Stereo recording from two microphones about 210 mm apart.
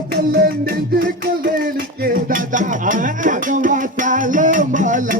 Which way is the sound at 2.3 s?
40° right (ahead or behind).